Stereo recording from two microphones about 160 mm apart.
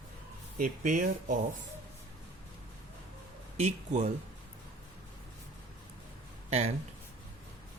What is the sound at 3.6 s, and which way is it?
Speech, 45° right (ahead or behind).